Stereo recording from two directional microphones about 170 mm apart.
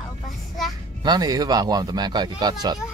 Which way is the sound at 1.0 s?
25° right (ahead or behind).